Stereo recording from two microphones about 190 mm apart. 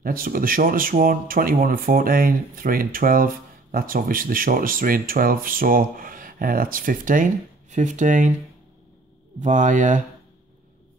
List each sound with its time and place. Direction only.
0.0 s speech: 50° right (ahead or behind)
9.4 s speech: 40° right (ahead or behind)